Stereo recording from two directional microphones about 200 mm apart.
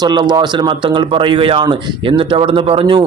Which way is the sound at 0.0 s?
20° right (ahead or behind).